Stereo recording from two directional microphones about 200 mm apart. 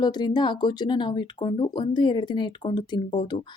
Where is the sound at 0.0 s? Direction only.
20° left (ahead or behind).